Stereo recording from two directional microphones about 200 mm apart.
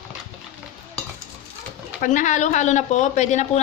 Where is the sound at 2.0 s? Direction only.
40° left (ahead or behind).